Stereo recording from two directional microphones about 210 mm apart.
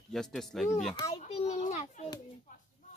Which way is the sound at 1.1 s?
30° left (ahead or behind).